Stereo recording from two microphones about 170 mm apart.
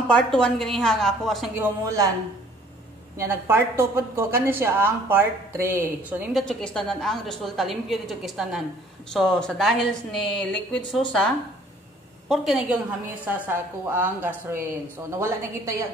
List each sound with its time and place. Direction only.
0.1 s a woman's voice: 5° left (ahead or behind)
1.5 s a man's voice: 15° right (ahead or behind)
3.2 s a woman's voice: 15° right (ahead or behind)
6.4 s a woman's voice: 5° left (ahead or behind)
12.3 s a woman's voice: centre (ahead or behind)